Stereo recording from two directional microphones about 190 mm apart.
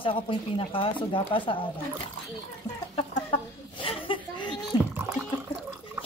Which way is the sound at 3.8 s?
25° left (ahead or behind).